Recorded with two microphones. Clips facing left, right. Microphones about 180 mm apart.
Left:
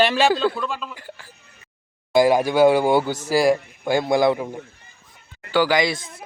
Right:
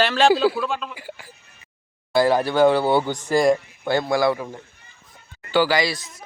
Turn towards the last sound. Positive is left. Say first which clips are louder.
# left 3 dB
turn(degrees=55)  # may be behind; listen again after turning